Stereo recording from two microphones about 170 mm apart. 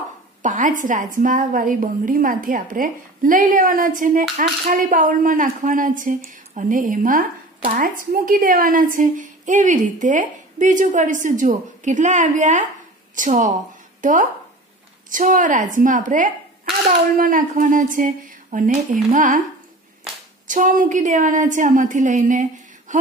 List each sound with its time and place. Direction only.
0.4 s a woman's voice: 50° right (ahead or behind)
20.4 s a woman's voice: 50° right (ahead or behind)